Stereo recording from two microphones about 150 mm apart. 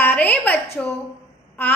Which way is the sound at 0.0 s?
10° left (ahead or behind).